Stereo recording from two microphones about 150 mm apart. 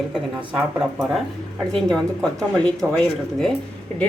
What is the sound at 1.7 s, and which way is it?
Speech, 5° left (ahead or behind).